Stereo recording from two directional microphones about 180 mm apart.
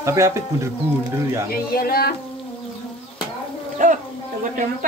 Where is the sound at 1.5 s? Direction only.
55° left (ahead or behind).